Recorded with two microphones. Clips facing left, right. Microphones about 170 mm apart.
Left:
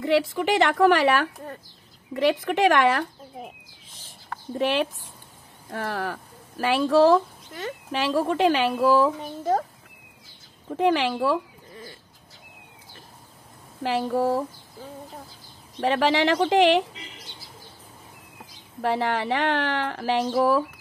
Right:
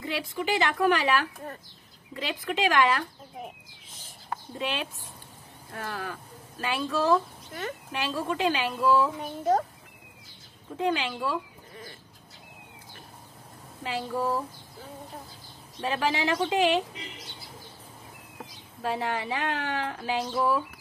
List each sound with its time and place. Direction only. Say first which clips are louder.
0.0 s a woman's voice: left 9 dB; 70° left (ahead or behind)
2.1 s speech: left 9 dB; 65° left (ahead or behind)
4.6 s a woman's voice: left 10 dB; 70° left (ahead or behind)
10.8 s a woman's voice: left 6 dB; 75° left (ahead or behind)
13.8 s a woman's voice: left 6 dB; 70° left (ahead or behind)
15.8 s speech: left 6 dB; 75° left (ahead or behind)
18.8 s a woman's voice: left 5 dB; 75° left (ahead or behind)